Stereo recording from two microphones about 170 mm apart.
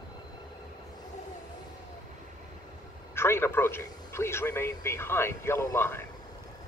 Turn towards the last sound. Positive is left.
turn(degrees=15)  # may be behind; listen again after turning